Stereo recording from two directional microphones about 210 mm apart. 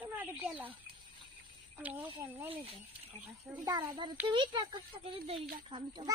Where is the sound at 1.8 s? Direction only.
5° right (ahead or behind).